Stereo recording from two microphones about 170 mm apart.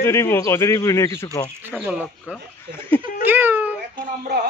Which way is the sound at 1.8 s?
5° right (ahead or behind).